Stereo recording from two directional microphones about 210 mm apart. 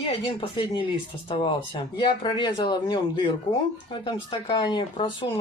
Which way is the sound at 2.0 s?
20° left (ahead or behind).